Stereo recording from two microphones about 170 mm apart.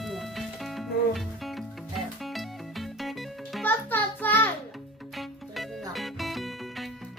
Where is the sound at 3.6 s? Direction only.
10° left (ahead or behind).